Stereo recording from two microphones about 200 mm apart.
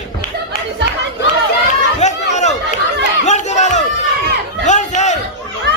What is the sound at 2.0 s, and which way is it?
Chatter, 35° left (ahead or behind).